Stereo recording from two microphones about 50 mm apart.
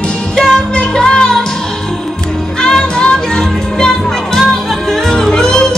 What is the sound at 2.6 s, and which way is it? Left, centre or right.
Music, centre.